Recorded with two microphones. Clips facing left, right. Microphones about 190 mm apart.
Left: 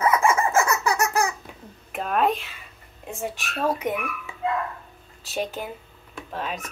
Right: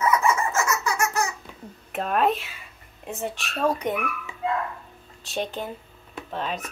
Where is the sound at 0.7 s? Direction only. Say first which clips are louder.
Left 2 dB; 35° left (ahead or behind).